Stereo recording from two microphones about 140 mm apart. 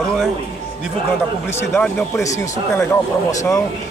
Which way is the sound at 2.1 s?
20° left (ahead or behind).